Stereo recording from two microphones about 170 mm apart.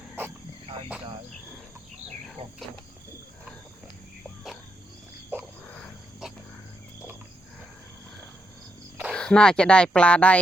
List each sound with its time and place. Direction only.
2.4 s speech: 35° right (ahead or behind)
5.3 s a sound: 10° right (ahead or behind)
5.7 s wild animals: centre (ahead or behind)
9.1 s speech: 5° left (ahead or behind)